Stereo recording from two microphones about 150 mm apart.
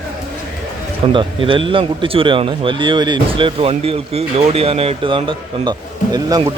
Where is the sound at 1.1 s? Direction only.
35° right (ahead or behind).